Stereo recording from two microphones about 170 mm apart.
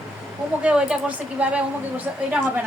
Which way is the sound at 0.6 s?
5° right (ahead or behind).